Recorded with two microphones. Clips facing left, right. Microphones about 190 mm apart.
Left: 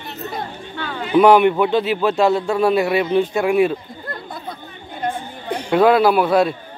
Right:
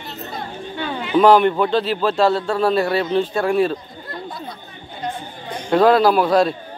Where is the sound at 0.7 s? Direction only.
20° right (ahead or behind).